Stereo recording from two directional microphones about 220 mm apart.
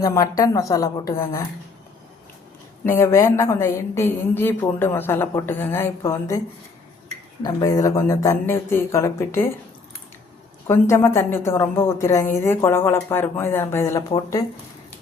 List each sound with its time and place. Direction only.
0.0 s a woman's voice: 15° left (ahead or behind)
2.8 s a woman's voice: 10° left (ahead or behind)
7.4 s a woman's voice: 15° left (ahead or behind)
10.7 s a woman's voice: 10° left (ahead or behind)